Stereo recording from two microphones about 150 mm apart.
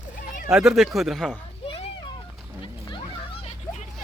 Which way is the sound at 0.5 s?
Centre (ahead or behind).